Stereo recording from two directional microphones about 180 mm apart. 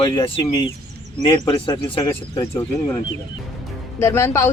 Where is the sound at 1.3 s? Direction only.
30° left (ahead or behind).